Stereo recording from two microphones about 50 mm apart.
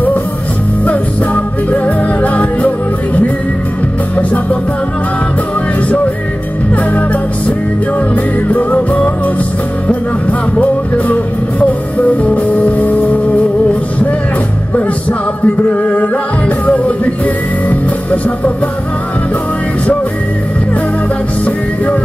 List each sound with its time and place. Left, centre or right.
0.8 s music: left
6.7 s music: left
12.2 s music: left
15.4 s music: left